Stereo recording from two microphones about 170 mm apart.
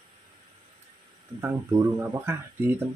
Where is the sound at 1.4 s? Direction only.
15° right (ahead or behind).